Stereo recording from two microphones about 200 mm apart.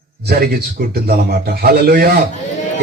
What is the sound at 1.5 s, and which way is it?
Speech, 55° right (ahead or behind).